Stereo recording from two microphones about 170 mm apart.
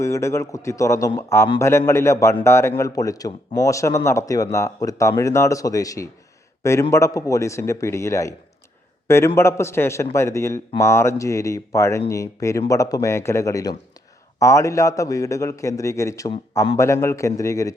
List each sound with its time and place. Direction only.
0.0 s a man's voice: 15° left (ahead or behind)